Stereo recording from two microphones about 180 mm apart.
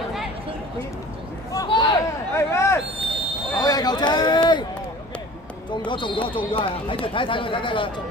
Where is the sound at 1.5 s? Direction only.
25° left (ahead or behind).